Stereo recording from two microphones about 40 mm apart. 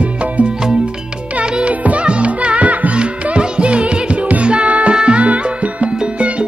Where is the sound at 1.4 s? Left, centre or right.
Right.